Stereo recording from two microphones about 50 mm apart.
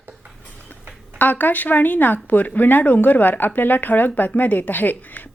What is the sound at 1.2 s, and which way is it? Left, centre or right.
A woman's voice, left.